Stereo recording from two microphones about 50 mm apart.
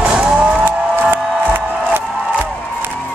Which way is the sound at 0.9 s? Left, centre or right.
Right.